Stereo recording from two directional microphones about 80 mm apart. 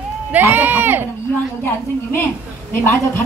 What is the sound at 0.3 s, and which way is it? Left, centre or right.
Speech, right.